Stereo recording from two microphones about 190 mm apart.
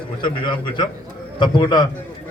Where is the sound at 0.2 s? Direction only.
25° left (ahead or behind).